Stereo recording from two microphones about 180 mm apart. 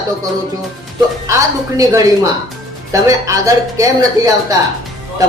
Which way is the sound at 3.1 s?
20° right (ahead or behind).